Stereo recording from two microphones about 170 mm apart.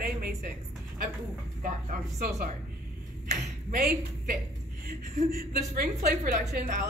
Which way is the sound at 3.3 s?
65° right (ahead or behind).